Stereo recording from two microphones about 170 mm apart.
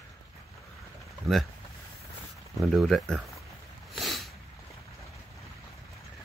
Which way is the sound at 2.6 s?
Centre (ahead or behind).